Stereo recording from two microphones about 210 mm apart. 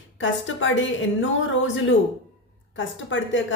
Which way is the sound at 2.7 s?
65° left (ahead or behind).